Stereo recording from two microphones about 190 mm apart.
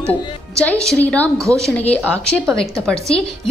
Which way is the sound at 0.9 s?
5° left (ahead or behind).